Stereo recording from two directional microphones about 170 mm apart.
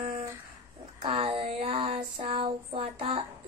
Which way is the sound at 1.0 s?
30° right (ahead or behind).